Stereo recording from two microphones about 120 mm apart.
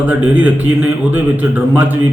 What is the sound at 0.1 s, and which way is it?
A man's voice, 10° right (ahead or behind).